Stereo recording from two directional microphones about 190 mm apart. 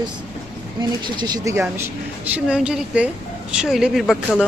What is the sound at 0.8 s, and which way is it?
Speech, 20° right (ahead or behind).